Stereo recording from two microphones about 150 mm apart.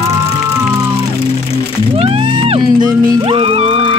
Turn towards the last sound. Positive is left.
turn(degrees=-35)  # may be behind; listen again after turning